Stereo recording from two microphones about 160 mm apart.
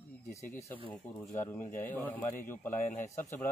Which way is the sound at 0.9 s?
15° left (ahead or behind).